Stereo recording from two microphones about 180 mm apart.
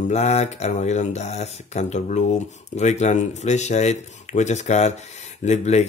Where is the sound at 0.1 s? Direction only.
40° left (ahead or behind).